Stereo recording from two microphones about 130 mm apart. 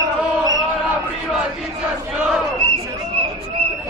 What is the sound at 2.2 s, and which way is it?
Battle cry, 10° right (ahead or behind).